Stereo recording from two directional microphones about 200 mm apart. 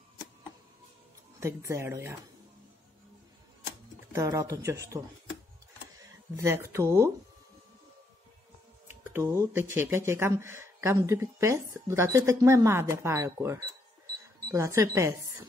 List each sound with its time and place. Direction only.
1.4 s speech: 15° right (ahead or behind)
4.1 s speech: 15° right (ahead or behind)
8.8 s speech: 10° right (ahead or behind)